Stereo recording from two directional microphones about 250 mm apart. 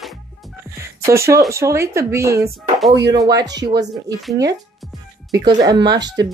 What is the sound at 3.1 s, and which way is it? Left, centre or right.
A woman's voice, centre.